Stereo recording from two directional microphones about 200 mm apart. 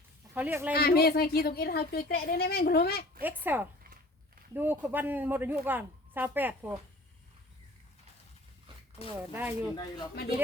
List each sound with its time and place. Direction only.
0.3 s a man's voice: 10° right (ahead or behind)
0.7 s a woman's voice: 50° left (ahead or behind)
3.2 s a woman's voice: 10° right (ahead or behind)
9.1 s a woman's voice: 10° right (ahead or behind)
9.7 s speech: 20° left (ahead or behind)